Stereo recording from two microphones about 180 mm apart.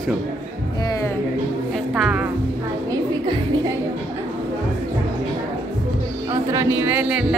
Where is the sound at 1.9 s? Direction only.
5° right (ahead or behind).